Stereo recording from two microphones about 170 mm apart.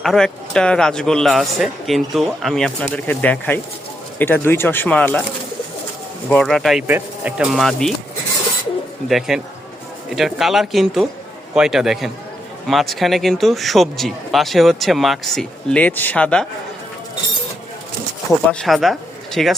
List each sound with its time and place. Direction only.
0.0 s a man's voice: centre (ahead or behind)
6.3 s a man's voice: 5° left (ahead or behind)
9.0 s a man's voice: centre (ahead or behind)
18.6 s speech: centre (ahead or behind)